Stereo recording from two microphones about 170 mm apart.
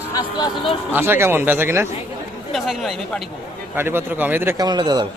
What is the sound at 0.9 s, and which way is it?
Speech, 15° right (ahead or behind).